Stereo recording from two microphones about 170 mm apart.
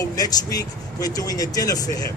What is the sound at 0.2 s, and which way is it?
Speech, 20° left (ahead or behind).